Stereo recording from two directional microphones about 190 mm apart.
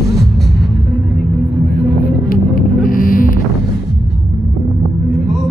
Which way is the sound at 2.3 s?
45° left (ahead or behind).